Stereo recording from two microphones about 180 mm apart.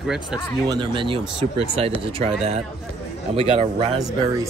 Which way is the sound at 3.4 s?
30° right (ahead or behind).